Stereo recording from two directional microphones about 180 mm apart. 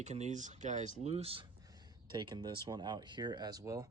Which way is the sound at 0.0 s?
40° right (ahead or behind).